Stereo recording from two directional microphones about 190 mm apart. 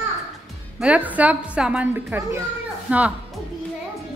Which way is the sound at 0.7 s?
5° right (ahead or behind).